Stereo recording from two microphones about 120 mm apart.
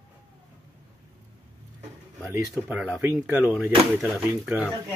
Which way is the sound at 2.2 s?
20° right (ahead or behind).